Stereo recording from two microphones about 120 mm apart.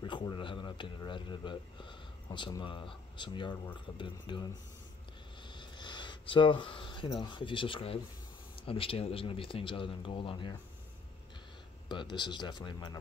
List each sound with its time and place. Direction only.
0.0 s a man's voice: 40° left (ahead or behind)
5.5 s speech: 40° left (ahead or behind)
11.9 s speech: 40° left (ahead or behind)